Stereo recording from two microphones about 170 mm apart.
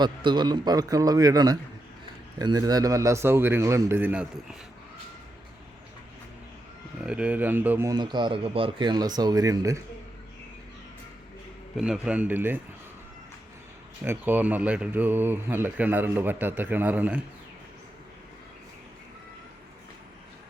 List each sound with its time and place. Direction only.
0.0 s speech: 25° right (ahead or behind); by 4.3 s 10° right (ahead or behind)
7.0 s speech: 5° right (ahead or behind)
11.8 s speech: 5° right (ahead or behind)
14.0 s speech: 10° right (ahead or behind)